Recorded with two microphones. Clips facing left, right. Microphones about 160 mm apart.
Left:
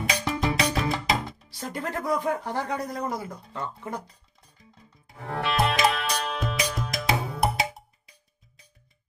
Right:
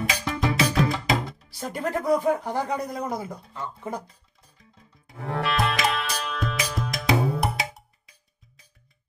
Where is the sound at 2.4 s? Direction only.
15° right (ahead or behind).